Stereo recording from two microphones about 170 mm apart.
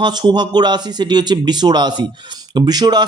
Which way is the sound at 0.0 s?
25° right (ahead or behind).